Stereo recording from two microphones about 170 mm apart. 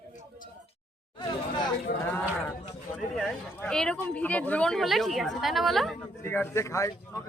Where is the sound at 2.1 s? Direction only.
10° left (ahead or behind).